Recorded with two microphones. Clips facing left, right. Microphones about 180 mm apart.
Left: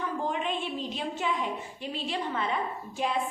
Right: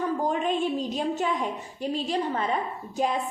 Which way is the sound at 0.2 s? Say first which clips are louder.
Right 5 dB; 40° right (ahead or behind).